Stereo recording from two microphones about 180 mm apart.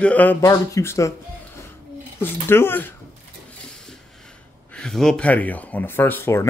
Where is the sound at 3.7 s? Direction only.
5° left (ahead or behind).